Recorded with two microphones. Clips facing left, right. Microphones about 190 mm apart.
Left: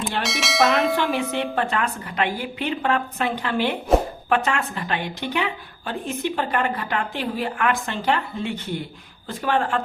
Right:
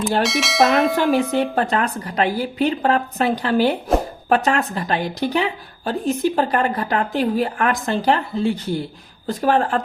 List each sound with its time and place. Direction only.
0.2 s speech: centre (ahead or behind)
1.1 s a woman's voice: 40° right (ahead or behind)